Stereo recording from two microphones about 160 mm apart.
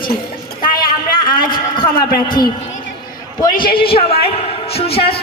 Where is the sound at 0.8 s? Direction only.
60° left (ahead or behind).